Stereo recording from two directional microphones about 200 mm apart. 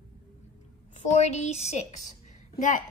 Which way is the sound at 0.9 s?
35° left (ahead or behind).